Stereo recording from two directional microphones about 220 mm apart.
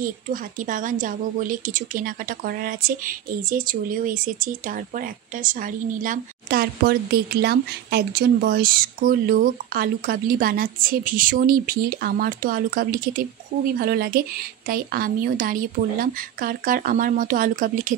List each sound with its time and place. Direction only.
0.0 s a woman's voice: 40° right (ahead or behind)